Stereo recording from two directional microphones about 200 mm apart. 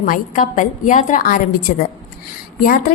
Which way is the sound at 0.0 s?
40° left (ahead or behind).